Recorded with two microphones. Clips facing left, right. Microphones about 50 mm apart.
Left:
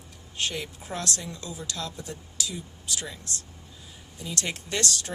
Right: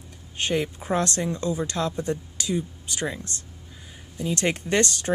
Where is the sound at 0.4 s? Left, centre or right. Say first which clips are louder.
Right 7 dB; right.